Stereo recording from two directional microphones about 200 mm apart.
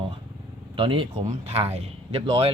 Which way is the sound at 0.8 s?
25° right (ahead or behind).